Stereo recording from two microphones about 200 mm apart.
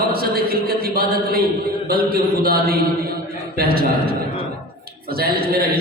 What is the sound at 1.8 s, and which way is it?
A man's voice, 50° right (ahead or behind).